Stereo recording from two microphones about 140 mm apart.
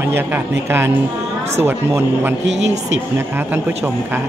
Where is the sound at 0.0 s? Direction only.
15° right (ahead or behind).